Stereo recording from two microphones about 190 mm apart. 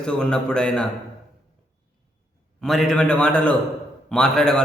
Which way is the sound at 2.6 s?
Centre (ahead or behind).